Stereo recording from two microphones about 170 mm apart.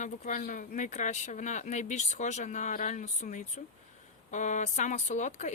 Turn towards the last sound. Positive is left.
turn(degrees=45)  # may be behind; listen again after turning